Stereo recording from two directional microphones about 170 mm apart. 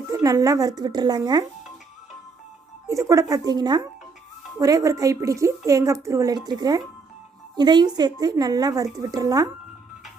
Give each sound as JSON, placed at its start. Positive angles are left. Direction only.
{"t": 0.1, "sound": "a woman's voice", "side_deg": -20}
{"t": 2.8, "sound": "a woman's voice", "side_deg": -20}